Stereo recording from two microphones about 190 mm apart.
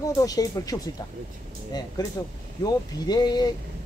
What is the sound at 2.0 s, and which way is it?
A woman's voice, 20° left (ahead or behind).